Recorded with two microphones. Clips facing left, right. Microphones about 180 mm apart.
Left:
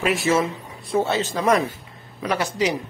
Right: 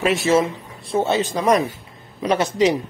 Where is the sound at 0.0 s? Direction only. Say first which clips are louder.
Right 3 dB; 25° right (ahead or behind).